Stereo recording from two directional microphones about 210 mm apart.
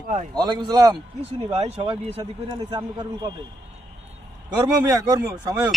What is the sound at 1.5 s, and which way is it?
A man's voice, 30° right (ahead or behind).